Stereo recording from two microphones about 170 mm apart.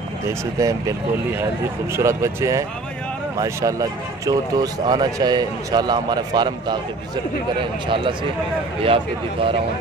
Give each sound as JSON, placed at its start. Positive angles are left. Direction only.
{"t": 0.6, "sound": "speech", "side_deg": -20}
{"t": 2.0, "sound": "speech", "side_deg": -15}